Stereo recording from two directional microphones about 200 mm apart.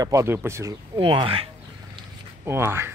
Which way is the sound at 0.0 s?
15° right (ahead or behind).